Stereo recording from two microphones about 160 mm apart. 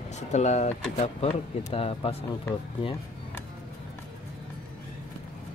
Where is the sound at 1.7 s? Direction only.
35° left (ahead or behind).